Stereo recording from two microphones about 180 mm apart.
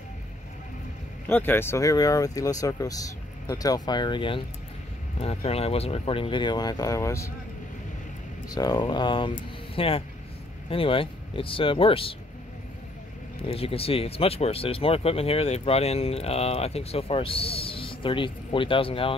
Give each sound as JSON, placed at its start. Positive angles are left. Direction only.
{"t": 1.2, "sound": "speech", "side_deg": 10}
{"t": 8.5, "sound": "speech", "side_deg": 20}
{"t": 13.4, "sound": "speech", "side_deg": 30}